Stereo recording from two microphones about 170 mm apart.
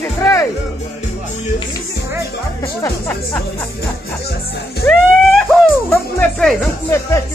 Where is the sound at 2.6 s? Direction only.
20° left (ahead or behind).